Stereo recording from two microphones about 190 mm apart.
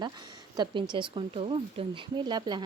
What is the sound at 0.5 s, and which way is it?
Speech, 25° right (ahead or behind).